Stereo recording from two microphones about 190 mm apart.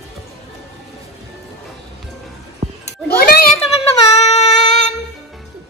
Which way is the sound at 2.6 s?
30° right (ahead or behind).